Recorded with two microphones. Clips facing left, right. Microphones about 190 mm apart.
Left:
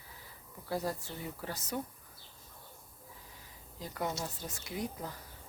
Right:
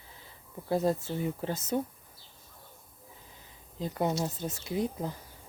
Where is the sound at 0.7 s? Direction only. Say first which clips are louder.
Right 8 dB; 25° right (ahead or behind).